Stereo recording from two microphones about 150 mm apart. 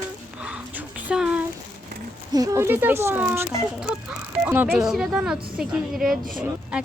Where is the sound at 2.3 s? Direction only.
25° right (ahead or behind).